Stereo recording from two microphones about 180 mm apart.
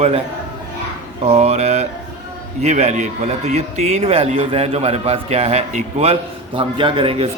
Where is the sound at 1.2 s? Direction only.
35° right (ahead or behind).